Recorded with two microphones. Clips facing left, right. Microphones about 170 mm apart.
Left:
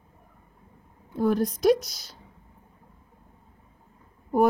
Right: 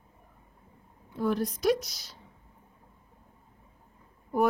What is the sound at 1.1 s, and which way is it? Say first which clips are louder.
Speech: left 5 dB; 45° left (ahead or behind).